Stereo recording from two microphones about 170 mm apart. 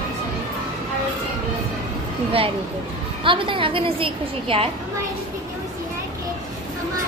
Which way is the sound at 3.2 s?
30° right (ahead or behind).